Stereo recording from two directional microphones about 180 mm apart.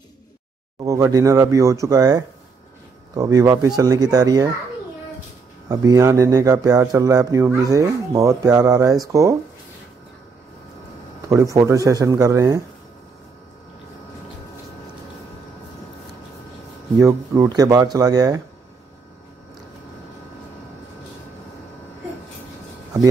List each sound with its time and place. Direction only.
0.7 s speech: 20° right (ahead or behind)
5.7 s speech: 20° right (ahead or behind)
11.2 s speech: 15° right (ahead or behind)
17.0 s speech: 20° right (ahead or behind)